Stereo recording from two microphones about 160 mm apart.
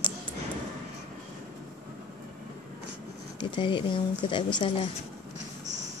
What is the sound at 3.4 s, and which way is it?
Speech, 30° left (ahead or behind).